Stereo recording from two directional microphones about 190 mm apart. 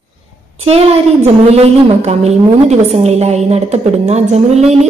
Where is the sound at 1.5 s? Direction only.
35° right (ahead or behind).